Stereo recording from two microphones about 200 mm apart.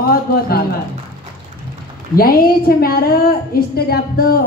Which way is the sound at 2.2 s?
50° left (ahead or behind).